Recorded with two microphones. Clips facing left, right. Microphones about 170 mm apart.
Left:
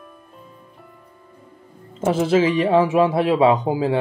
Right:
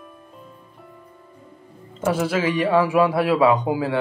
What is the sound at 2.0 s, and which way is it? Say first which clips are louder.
A man's voice: left 4 dB; 25° left (ahead or behind).